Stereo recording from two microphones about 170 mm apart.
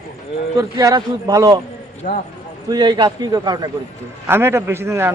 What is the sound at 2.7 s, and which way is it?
A man's voice, 25° right (ahead or behind).